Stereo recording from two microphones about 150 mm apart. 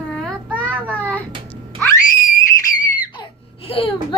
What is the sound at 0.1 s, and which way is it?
Child singing, 5° left (ahead or behind).